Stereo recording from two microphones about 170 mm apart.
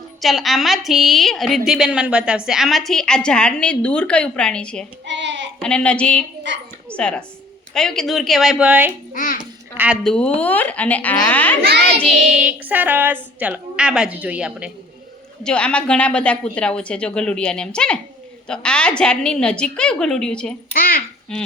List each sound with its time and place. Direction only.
0.2 s a woman's voice: centre (ahead or behind)
5.0 s child singing: 90° right
5.5 s speech: 5° left (ahead or behind)
6.5 s a woman's voice: 90° right
6.9 s a woman's voice: 5° left (ahead or behind)
9.1 s a child's voice: 55° left (ahead or behind)
9.7 s a woman's voice: 10° right (ahead or behind)
10.0 s speech: 5° left (ahead or behind)
11.9 s a woman's voice: centre (ahead or behind)
15.4 s a woman's voice: 5° left (ahead or behind)
20.7 s a child's voice: 60° left (ahead or behind)
21.3 s a woman's voice: 5° left (ahead or behind)